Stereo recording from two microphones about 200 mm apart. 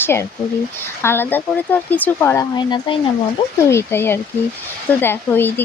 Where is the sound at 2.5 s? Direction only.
20° left (ahead or behind).